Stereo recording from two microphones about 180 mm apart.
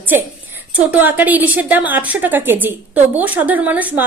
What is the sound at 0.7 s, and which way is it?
A woman's voice, 10° right (ahead or behind).